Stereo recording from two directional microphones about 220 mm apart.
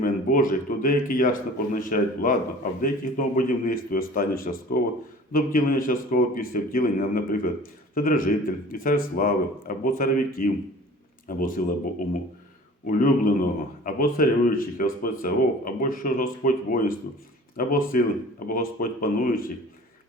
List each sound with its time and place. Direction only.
0.0 s speech: 40° left (ahead or behind)
12.9 s speech: 40° left (ahead or behind)